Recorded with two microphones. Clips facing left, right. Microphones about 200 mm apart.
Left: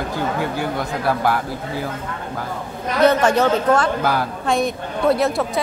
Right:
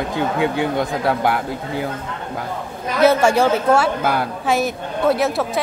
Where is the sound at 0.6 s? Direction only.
20° right (ahead or behind).